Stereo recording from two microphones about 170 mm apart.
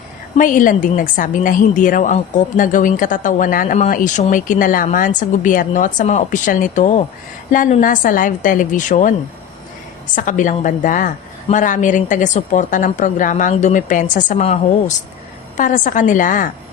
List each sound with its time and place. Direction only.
0.3 s a woman's voice: 50° left (ahead or behind)
10.2 s a woman's voice: 50° left (ahead or behind)